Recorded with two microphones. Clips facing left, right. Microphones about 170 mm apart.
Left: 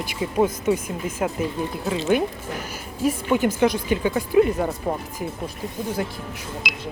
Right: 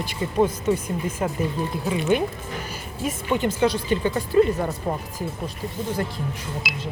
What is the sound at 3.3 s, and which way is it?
Speech, 10° left (ahead or behind).